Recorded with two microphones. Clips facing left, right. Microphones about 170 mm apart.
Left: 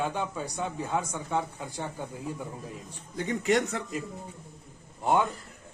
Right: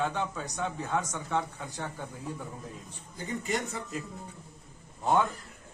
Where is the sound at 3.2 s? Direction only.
80° left.